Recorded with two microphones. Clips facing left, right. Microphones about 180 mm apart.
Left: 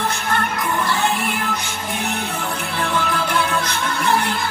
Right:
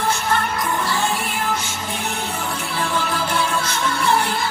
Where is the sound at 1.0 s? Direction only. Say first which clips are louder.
Left 1 dB; 60° left (ahead or behind).